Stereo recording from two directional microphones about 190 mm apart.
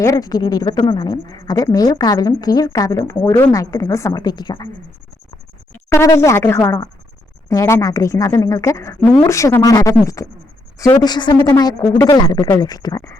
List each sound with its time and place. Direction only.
0.0 s speech: 20° left (ahead or behind)
5.7 s a woman's voice: 15° left (ahead or behind)